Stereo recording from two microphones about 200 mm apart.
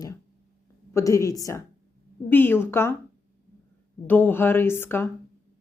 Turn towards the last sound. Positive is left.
turn(degrees=10)  # may be behind; listen again after turning